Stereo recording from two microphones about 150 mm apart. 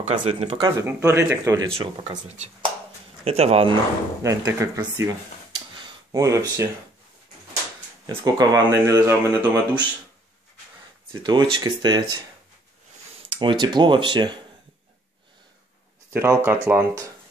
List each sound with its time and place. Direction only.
0.0 s speech: 50° right (ahead or behind)
0.5 s speech: 30° right (ahead or behind)
0.8 s speech: 15° right (ahead or behind)
1.8 s speech: 45° right (ahead or behind)
4.2 s speech: 20° right (ahead or behind)
5.8 s a sound: 25° right (ahead or behind)
8.1 s speech: 25° right (ahead or behind)
11.2 s speech: 30° right (ahead or behind)
13.3 s speech: 30° right (ahead or behind)
16.1 s speech: 15° right (ahead or behind)